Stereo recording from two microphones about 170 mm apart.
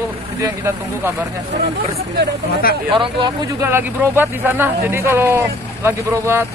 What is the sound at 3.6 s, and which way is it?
Speech, 15° right (ahead or behind).